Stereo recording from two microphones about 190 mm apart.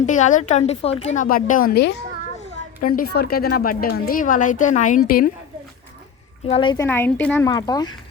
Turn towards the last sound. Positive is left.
turn(degrees=20)  # may be behind; listen again after turning